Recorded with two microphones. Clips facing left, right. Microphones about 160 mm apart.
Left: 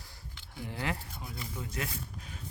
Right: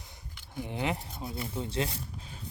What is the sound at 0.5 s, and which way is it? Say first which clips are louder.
Speech: right 4 dB; 20° right (ahead or behind).